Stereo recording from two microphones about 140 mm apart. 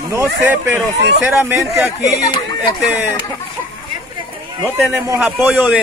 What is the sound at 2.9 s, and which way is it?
Speech, 10° right (ahead or behind).